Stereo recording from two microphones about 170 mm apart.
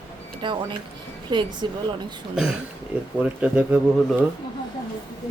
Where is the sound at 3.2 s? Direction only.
5° right (ahead or behind).